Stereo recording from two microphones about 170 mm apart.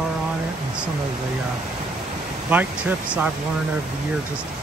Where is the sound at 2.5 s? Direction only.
10° right (ahead or behind).